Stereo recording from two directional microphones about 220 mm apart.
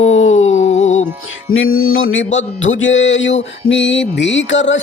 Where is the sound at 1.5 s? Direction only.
65° left (ahead or behind).